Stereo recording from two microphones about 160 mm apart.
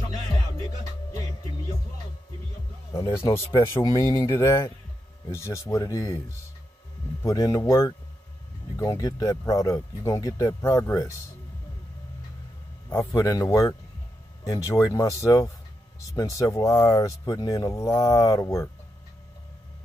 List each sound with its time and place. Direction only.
2.9 s speech: 20° left (ahead or behind)
7.2 s speech: 20° left (ahead or behind)
12.9 s speech: 20° left (ahead or behind)